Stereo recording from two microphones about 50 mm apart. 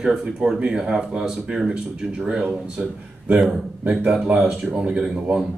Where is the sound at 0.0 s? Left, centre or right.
Centre.